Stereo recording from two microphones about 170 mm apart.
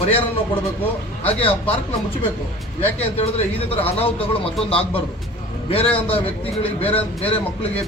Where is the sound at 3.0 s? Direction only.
35° left (ahead or behind).